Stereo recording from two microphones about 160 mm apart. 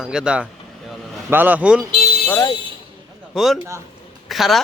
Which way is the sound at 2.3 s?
20° left (ahead or behind).